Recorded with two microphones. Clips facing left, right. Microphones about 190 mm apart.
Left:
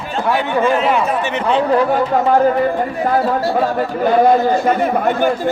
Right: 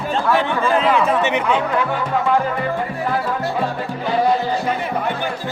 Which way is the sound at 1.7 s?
40° left (ahead or behind).